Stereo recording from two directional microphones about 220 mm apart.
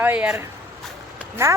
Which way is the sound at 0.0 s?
5° right (ahead or behind).